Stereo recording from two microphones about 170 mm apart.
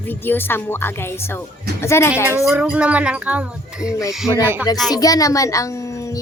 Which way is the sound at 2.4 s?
5° right (ahead or behind).